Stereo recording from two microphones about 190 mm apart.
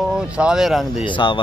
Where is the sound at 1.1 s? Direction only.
25° left (ahead or behind).